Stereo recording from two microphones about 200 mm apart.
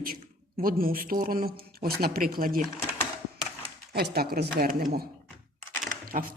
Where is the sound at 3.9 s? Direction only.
50° right (ahead or behind).